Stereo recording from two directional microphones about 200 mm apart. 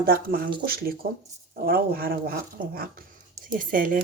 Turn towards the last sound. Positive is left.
turn(degrees=-45)  # may be behind; listen again after turning